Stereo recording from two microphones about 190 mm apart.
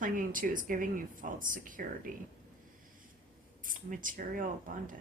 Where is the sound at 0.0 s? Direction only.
45° right (ahead or behind).